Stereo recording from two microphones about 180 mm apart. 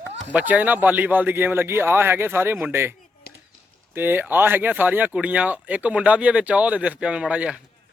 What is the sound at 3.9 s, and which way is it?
Speech, 10° right (ahead or behind).